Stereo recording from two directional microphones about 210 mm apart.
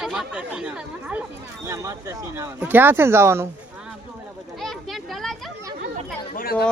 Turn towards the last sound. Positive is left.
turn(degrees=45)  # may be behind; listen again after turning